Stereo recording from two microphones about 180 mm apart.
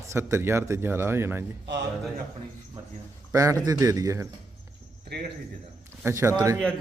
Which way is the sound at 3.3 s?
15° right (ahead or behind).